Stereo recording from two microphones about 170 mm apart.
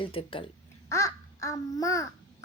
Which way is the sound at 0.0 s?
30° left (ahead or behind).